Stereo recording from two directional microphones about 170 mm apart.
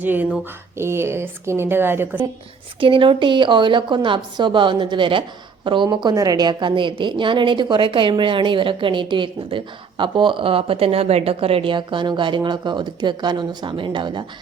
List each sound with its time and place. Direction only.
0.0 s a woman's voice: 10° right (ahead or behind)
2.8 s a woman's voice: 30° right (ahead or behind)